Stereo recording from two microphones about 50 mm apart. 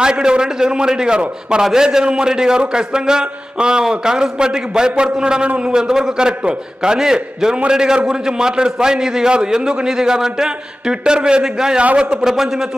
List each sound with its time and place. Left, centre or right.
0.0 s a man's voice: centre